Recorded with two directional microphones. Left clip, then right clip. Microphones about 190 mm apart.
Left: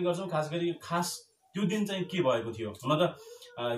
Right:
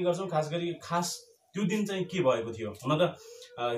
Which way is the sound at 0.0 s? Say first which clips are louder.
Right 2 dB; 25° right (ahead or behind).